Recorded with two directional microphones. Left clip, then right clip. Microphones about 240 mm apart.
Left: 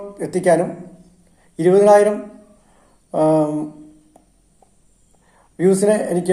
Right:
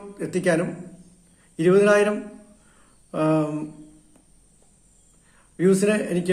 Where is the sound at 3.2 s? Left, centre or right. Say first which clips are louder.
Left 7 dB; left.